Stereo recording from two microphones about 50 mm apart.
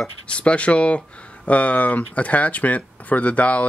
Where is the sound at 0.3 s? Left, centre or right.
Left.